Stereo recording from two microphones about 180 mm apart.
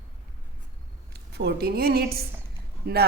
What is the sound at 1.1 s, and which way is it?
A woman's voice, 65° right (ahead or behind).